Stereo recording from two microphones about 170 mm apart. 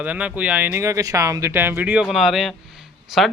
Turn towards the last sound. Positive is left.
turn(degrees=0)  # may be behind; listen again after turning